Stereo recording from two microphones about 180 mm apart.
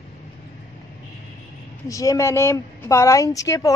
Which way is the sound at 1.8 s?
20° left (ahead or behind).